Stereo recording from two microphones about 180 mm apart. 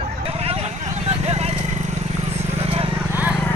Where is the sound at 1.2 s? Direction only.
35° right (ahead or behind).